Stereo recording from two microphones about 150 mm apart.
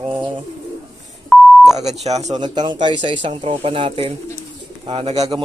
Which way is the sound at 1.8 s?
45° right (ahead or behind).